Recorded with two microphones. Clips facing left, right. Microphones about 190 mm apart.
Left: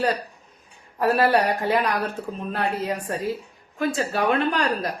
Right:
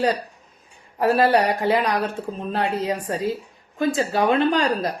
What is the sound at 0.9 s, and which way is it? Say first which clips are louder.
Speech: right 2 dB; 20° right (ahead or behind).